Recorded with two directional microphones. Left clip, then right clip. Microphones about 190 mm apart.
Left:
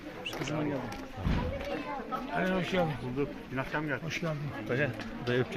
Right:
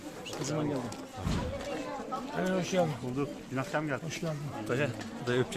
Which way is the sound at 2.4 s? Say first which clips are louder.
Right 1 dB; 20° right (ahead or behind).